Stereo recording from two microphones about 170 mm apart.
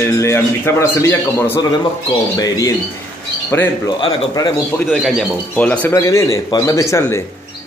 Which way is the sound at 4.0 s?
25° left (ahead or behind).